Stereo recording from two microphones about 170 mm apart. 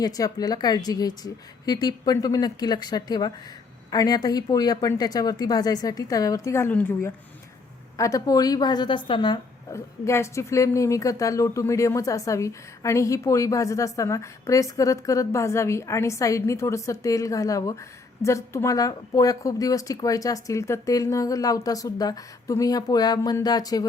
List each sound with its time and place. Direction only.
0.0 s a woman's voice: 20° left (ahead or behind)